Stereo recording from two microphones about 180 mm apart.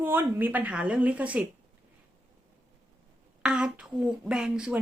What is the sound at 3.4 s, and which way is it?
Speech, 5° right (ahead or behind).